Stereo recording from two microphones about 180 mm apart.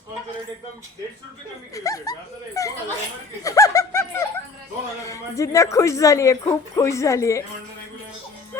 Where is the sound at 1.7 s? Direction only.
20° left (ahead or behind).